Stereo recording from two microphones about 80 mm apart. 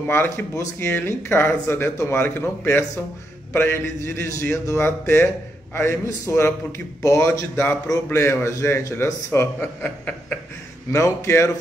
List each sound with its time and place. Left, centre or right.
0.0 s speech: left
9.8 s a sound: centre
10.9 s speech: left